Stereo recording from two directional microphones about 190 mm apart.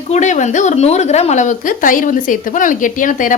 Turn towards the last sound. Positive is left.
turn(degrees=45)  # may be behind; listen again after turning